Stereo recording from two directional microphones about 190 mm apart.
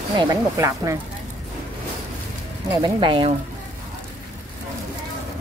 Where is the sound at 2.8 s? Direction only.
25° right (ahead or behind).